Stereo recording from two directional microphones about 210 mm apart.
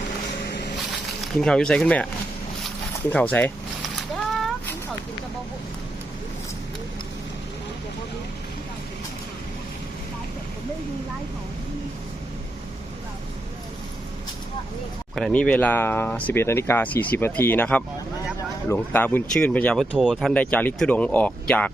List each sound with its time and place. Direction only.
0.4 s vehicle: 50° left (ahead or behind)
1.2 s speech: 5° left (ahead or behind)
3.1 s speech: 5° left (ahead or behind)
15.1 s speech: 5° left (ahead or behind)